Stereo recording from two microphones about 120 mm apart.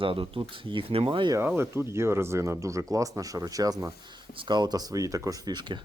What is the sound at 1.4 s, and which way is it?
Speech, 20° right (ahead or behind).